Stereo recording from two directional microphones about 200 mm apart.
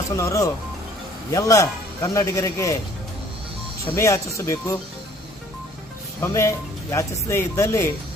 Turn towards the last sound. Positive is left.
turn(degrees=15)  # may be behind; listen again after turning